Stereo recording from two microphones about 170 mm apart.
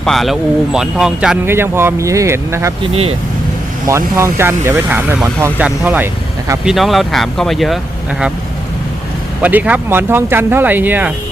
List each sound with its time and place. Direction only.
0.0 s speech: centre (ahead or behind); by 2.7 s 15° right (ahead or behind)
2.8 s speech: 35° right (ahead or behind)
3.8 s speech: 15° right (ahead or behind); by 7.8 s centre (ahead or behind)
9.4 s speech: 10° right (ahead or behind)